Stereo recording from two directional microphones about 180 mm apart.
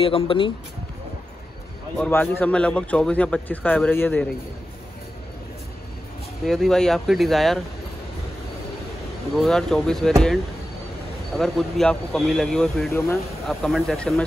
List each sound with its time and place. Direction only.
0.0 s speech: 30° left (ahead or behind)
2.0 s a man's voice: 10° left (ahead or behind)
6.4 s speech: centre (ahead or behind)
9.4 s speech: 5° left (ahead or behind)
12.9 s a man's voice: 15° left (ahead or behind)
13.5 s speech: centre (ahead or behind)